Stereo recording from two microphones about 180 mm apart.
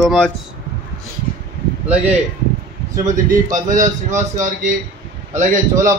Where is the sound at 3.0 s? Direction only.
45° right (ahead or behind).